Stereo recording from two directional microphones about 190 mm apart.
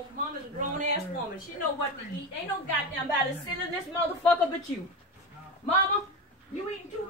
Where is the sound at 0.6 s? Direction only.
40° right (ahead or behind).